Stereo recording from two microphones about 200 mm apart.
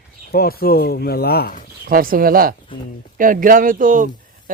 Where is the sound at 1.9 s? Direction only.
45° right (ahead or behind).